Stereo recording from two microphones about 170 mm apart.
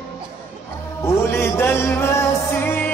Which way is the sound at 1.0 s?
15° left (ahead or behind).